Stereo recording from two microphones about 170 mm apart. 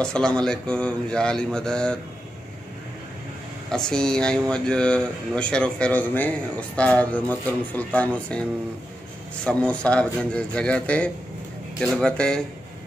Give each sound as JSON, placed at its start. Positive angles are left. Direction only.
{"t": 0.0, "sound": "speech", "side_deg": 5}
{"t": 3.7, "sound": "speech", "side_deg": 5}